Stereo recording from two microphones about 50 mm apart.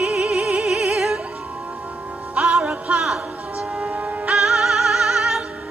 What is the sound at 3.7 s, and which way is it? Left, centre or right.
Music, right.